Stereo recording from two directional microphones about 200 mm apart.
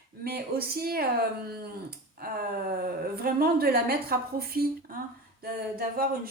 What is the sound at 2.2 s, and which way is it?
A woman's voice, 50° right (ahead or behind).